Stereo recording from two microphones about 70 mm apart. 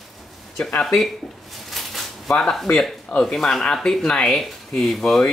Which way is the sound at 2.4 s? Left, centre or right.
Centre.